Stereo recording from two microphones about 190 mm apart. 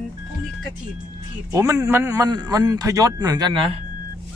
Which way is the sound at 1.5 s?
15° right (ahead or behind).